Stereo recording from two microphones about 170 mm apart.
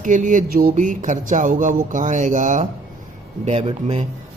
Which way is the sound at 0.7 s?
45° right (ahead or behind).